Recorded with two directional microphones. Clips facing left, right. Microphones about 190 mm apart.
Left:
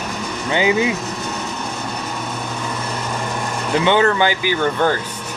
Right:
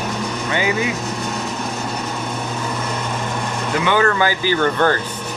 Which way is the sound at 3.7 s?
25° left (ahead or behind).